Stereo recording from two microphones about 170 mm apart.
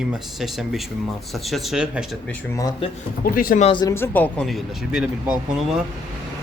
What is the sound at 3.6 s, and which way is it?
Speech, 30° left (ahead or behind).